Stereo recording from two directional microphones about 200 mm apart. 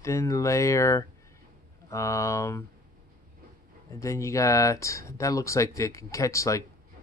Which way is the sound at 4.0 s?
15° left (ahead or behind).